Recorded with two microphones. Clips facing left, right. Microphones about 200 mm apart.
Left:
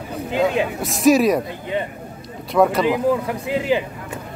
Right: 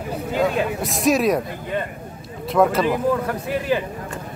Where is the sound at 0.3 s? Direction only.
20° left (ahead or behind).